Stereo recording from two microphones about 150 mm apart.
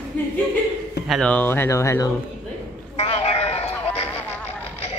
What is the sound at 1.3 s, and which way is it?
Speech, 15° left (ahead or behind).